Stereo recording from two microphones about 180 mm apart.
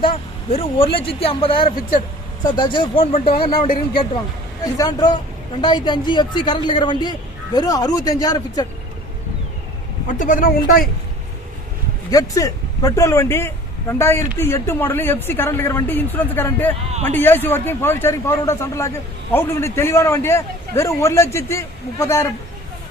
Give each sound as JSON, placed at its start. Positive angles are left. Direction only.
{"t": 0.0, "sound": "a man's voice", "side_deg": 30}
{"t": 3.5, "sound": "speech", "side_deg": 50}
{"t": 4.6, "sound": "a man's voice", "side_deg": 20}
{"t": 10.2, "sound": "speech", "side_deg": 50}
{"t": 12.1, "sound": "a man's voice", "side_deg": 20}